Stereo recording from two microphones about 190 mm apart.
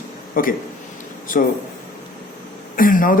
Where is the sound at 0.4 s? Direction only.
45° left (ahead or behind).